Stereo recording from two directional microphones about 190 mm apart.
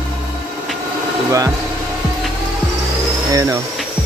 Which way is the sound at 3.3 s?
15° right (ahead or behind).